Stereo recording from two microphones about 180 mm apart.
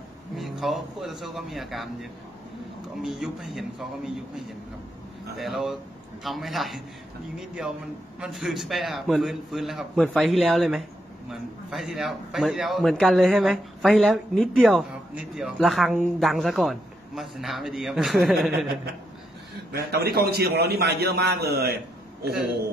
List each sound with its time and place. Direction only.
0.4 s a man's voice: centre (ahead or behind)
19.7 s a man's voice: 60° right (ahead or behind)